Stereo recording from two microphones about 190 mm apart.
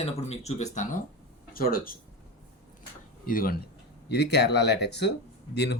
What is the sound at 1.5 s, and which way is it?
Speech, 50° left (ahead or behind).